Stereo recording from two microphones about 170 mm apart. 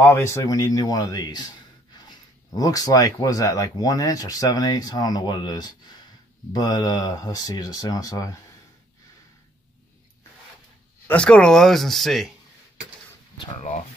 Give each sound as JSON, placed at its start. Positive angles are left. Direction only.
{"t": 0.0, "sound": "speech", "side_deg": 15}
{"t": 11.1, "sound": "speech", "side_deg": 5}